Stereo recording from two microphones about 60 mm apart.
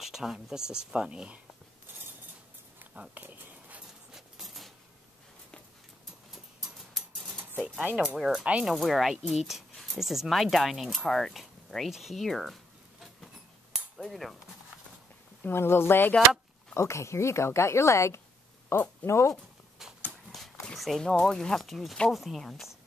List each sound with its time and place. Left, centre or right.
0.0 s speech: centre
3.2 s a sound: right
4.1 s a sound: centre
7.5 s speech: right
8.2 s speech: centre
13.9 s cutlery: centre
15.4 s speech: left
16.7 s speech: left
19.8 s dog: centre
20.2 s a sound: centre
20.7 s speech: centre